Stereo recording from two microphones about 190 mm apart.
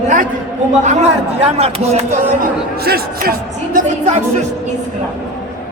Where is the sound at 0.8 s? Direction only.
35° right (ahead or behind).